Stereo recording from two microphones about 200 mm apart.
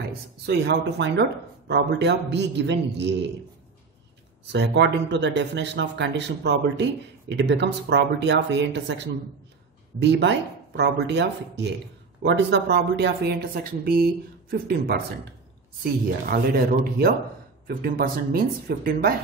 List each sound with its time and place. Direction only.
0.0 s speech: 55° right (ahead or behind)
4.5 s speech: 60° right (ahead or behind)